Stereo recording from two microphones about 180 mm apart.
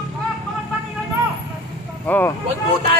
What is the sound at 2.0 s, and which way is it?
Speech, 10° left (ahead or behind).